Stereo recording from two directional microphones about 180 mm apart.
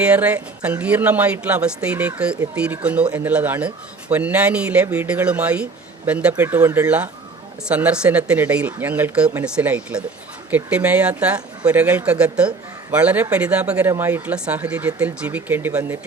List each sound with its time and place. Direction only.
0.0 s speech: 10° right (ahead or behind)